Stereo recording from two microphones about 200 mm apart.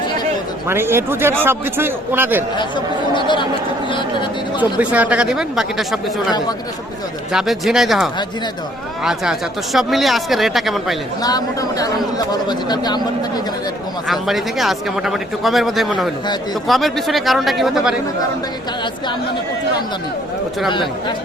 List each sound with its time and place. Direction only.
0.7 s a man's voice: 10° right (ahead or behind)
3.2 s speech: 25° left (ahead or behind)
4.8 s speech: 5° right (ahead or behind)
7.3 s speech: centre (ahead or behind)
11.2 s speech: 20° left (ahead or behind)
14.1 s speech: centre (ahead or behind)